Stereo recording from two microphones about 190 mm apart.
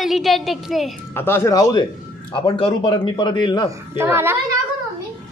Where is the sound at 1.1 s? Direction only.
10° left (ahead or behind).